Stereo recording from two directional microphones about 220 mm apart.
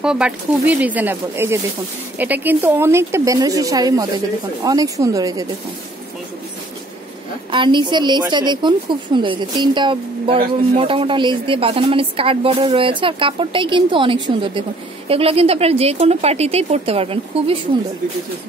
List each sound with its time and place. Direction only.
0.0 s a woman's voice: 5° right (ahead or behind)
7.5 s a woman's voice: 20° right (ahead or behind)